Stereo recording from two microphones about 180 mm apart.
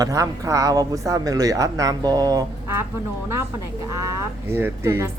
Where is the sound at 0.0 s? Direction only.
20° right (ahead or behind).